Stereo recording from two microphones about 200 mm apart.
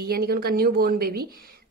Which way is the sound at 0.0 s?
50° right (ahead or behind).